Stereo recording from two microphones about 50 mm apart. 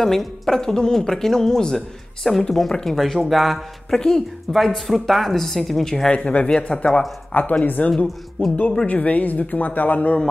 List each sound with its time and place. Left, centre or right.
0.0 s a woman's voice: centre
6.0 s a man's voice: left
7.3 s a man's voice: left